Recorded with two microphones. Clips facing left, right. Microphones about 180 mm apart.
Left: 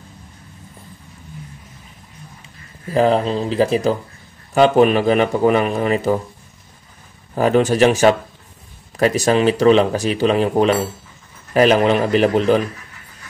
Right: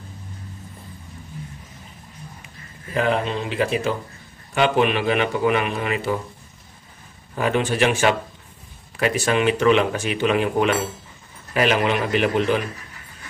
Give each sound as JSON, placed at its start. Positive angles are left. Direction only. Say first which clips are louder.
{"t": 2.4, "sound": "speech", "louder": "left 6 dB", "side_deg": 35}
{"t": 7.3, "sound": "speech", "louder": "left 6 dB", "side_deg": 40}